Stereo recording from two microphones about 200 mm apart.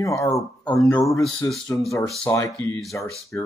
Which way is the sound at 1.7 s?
10° left (ahead or behind).